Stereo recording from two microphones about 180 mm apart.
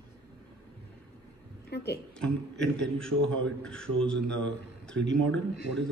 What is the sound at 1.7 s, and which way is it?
Speech, 70° left (ahead or behind).